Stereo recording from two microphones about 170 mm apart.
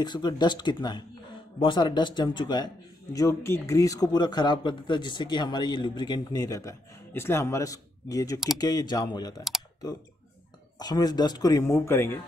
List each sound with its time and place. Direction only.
0.0 s speech: 25° left (ahead or behind)
10.8 s speech: 20° left (ahead or behind)